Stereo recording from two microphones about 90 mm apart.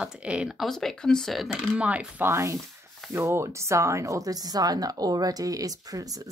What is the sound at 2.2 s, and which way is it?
A woman's voice, 30° right (ahead or behind).